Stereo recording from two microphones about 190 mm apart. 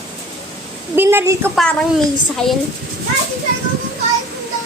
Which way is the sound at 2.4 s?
5° left (ahead or behind).